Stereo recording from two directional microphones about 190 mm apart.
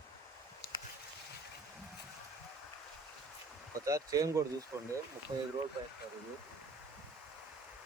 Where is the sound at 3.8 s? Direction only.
15° right (ahead or behind).